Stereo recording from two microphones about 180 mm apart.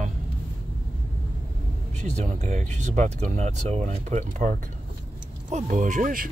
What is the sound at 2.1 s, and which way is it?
Speech, 40° right (ahead or behind).